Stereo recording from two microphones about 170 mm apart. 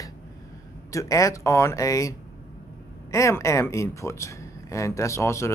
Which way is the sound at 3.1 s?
15° left (ahead or behind).